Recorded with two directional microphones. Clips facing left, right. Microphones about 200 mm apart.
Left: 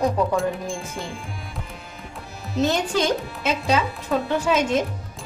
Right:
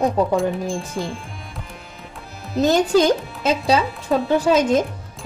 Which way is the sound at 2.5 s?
40° right (ahead or behind).